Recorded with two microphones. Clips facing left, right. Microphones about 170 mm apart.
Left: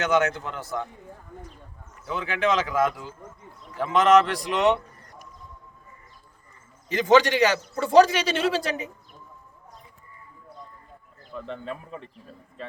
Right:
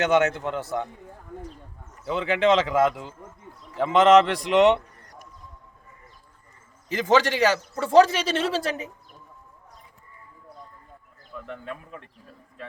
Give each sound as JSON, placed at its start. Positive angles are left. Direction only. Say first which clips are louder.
{"t": 0.0, "sound": "speech", "louder": "right 2 dB", "side_deg": -25}
{"t": 2.0, "sound": "speech", "louder": "right 4 dB", "side_deg": -25}
{"t": 6.9, "sound": "a woman's voice", "louder": "left 2 dB", "side_deg": 0}
{"t": 11.3, "sound": "speech", "louder": "left 2 dB", "side_deg": 30}